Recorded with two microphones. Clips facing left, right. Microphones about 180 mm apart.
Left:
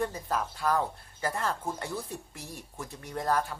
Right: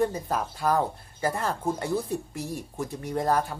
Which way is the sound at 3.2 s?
25° right (ahead or behind).